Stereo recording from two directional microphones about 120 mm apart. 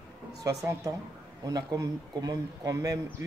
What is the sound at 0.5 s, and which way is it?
Speech, 25° right (ahead or behind).